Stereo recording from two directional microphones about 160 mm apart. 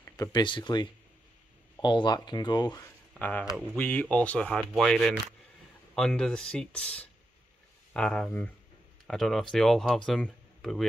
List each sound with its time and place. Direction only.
0.3 s speech: 30° left (ahead or behind)
3.2 s speech: 10° left (ahead or behind)